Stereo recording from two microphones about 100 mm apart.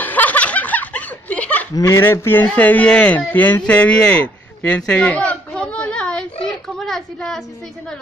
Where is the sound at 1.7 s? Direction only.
30° left (ahead or behind); by 3.2 s 10° left (ahead or behind).